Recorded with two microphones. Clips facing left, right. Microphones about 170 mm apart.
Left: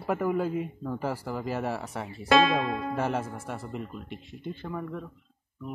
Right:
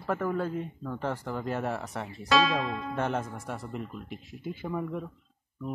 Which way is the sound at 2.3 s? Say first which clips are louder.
Left 3 dB; 55° left (ahead or behind).